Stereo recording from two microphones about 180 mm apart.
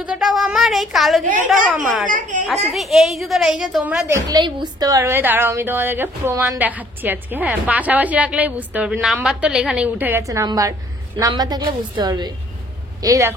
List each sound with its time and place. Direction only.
0.0 s a woman's voice: 5° right (ahead or behind)
2.0 s a woman's voice: 45° right (ahead or behind)
2.7 s a woman's voice: centre (ahead or behind)
4.1 s a woman's voice: 20° right (ahead or behind)